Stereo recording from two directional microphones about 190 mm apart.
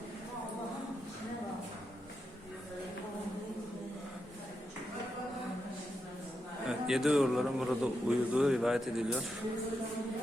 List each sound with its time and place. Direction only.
6.7 s speech: centre (ahead or behind)